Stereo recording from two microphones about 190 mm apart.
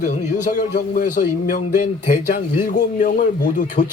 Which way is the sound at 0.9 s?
45° left (ahead or behind).